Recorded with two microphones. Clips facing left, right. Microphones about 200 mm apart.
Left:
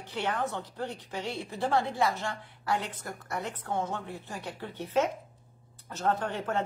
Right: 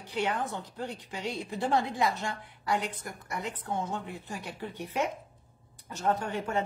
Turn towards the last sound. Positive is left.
turn(degrees=-10)  # may be behind; listen again after turning